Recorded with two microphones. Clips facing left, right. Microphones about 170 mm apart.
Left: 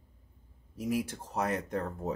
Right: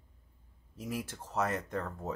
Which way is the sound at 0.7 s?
15° left (ahead or behind).